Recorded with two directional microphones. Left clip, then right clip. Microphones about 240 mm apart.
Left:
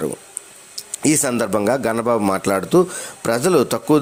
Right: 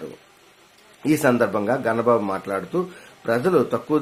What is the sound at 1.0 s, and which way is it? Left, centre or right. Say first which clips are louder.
A man's voice: even; left.